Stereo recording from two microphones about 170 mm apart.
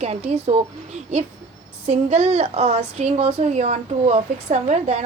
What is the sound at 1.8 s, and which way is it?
Speech, 40° right (ahead or behind).